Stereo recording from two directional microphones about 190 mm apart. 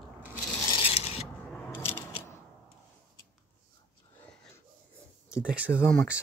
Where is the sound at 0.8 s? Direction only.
30° left (ahead or behind).